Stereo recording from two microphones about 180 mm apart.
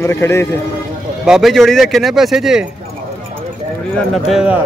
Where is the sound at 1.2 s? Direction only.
Centre (ahead or behind).